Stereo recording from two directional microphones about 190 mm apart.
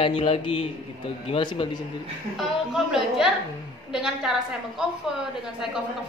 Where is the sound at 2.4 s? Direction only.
Centre (ahead or behind).